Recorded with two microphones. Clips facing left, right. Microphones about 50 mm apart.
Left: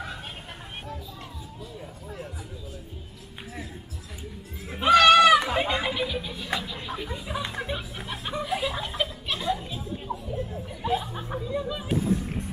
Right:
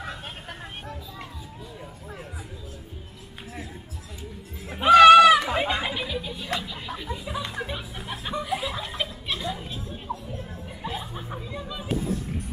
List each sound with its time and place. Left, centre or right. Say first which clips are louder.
4.6 s a sound: right 5 dB; centre
5.5 s music: even; centre
12.1 s music: left 4 dB; left